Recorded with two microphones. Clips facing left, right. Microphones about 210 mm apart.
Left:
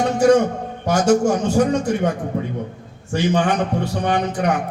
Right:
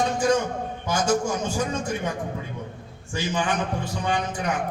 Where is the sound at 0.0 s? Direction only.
65° left (ahead or behind).